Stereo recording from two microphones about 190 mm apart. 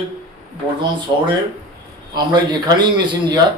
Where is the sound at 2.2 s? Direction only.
20° right (ahead or behind).